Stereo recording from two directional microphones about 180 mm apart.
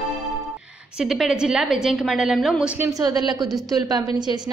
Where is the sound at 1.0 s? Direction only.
Centre (ahead or behind).